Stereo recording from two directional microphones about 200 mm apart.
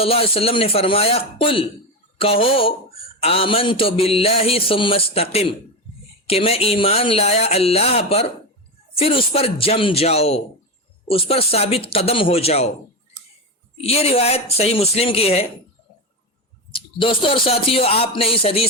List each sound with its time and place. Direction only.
0.0 s speech: 30° left (ahead or behind)
13.8 s speech: 30° left (ahead or behind)
16.7 s speech: 25° left (ahead or behind)